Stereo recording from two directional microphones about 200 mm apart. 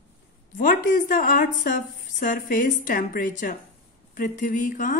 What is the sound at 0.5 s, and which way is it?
A woman's voice, 40° left (ahead or behind).